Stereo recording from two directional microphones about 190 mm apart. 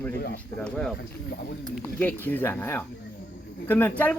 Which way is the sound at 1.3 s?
55° left (ahead or behind).